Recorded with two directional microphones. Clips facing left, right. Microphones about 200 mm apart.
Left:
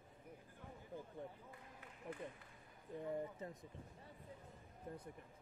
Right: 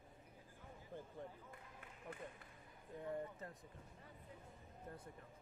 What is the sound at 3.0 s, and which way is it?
Speech, 15° left (ahead or behind).